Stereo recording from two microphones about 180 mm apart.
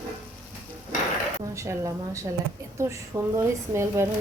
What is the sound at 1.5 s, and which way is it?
A woman's voice, 15° right (ahead or behind).